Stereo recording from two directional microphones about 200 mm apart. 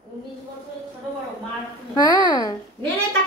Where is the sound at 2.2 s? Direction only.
20° left (ahead or behind).